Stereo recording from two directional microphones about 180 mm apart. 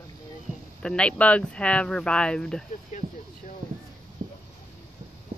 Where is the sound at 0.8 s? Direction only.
5° left (ahead or behind).